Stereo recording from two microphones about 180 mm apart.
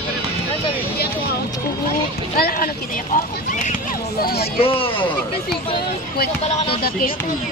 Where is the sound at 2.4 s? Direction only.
55° left (ahead or behind).